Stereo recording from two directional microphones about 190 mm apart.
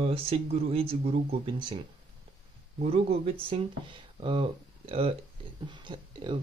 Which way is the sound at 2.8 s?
30° right (ahead or behind).